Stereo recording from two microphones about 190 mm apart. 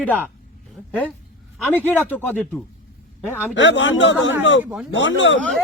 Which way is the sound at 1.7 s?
10° left (ahead or behind).